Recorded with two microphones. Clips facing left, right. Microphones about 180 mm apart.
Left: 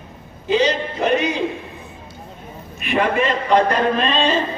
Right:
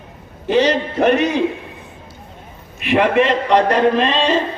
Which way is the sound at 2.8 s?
75° right (ahead or behind).